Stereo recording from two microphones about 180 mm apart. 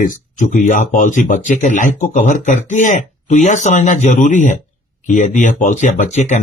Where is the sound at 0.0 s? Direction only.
45° left (ahead or behind).